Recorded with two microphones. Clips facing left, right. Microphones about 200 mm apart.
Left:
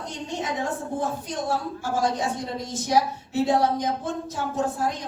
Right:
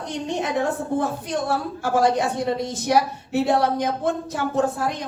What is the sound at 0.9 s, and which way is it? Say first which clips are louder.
A woman's voice: right 4 dB; 65° right (ahead or behind).